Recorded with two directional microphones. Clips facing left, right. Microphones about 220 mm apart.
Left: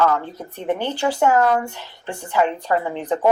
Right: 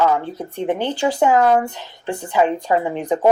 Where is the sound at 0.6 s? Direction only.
15° right (ahead or behind).